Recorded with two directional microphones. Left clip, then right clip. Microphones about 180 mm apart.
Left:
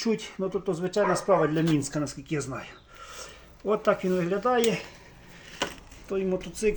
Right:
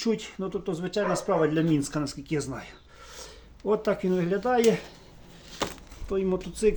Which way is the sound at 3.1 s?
10° left (ahead or behind).